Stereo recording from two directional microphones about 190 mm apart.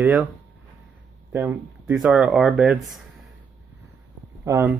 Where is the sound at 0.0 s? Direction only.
10° right (ahead or behind).